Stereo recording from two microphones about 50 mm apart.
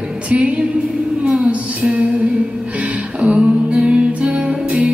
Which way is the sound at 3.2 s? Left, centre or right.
Right.